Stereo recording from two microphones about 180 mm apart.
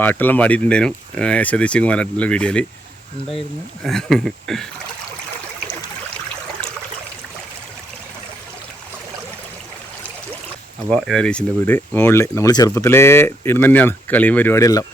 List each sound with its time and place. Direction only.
0.0 s speech: 10° left (ahead or behind)
3.8 s speech: centre (ahead or behind)
10.8 s speech: centre (ahead or behind); by 14.8 s 20° left (ahead or behind)